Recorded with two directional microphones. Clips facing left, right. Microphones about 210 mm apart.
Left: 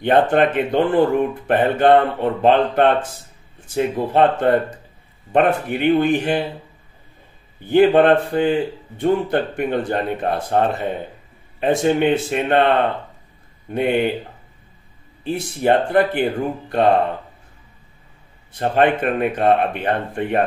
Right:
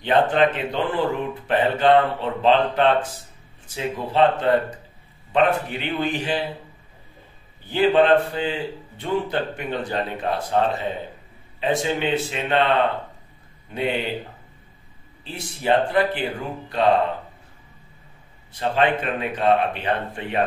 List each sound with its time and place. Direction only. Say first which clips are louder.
0.0 s speech: left 3 dB; 55° left (ahead or behind)
7.7 s speech: left 4 dB; 55° left (ahead or behind)
15.2 s speech: left 5 dB; 55° left (ahead or behind)
18.5 s speech: left 4 dB; 55° left (ahead or behind)